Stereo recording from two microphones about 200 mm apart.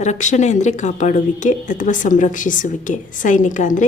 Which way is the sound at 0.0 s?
35° left (ahead or behind).